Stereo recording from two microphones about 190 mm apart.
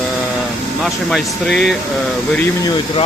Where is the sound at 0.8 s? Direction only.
Centre (ahead or behind).